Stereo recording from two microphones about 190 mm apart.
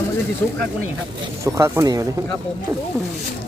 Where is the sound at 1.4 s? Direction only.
15° right (ahead or behind).